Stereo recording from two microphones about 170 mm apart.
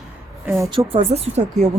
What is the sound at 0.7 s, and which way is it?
Speech, 35° right (ahead or behind).